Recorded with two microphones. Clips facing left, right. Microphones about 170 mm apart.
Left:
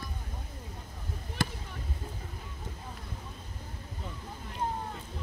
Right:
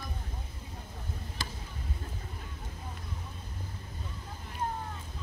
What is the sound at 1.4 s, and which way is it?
Basketball bounce, 60° left (ahead or behind).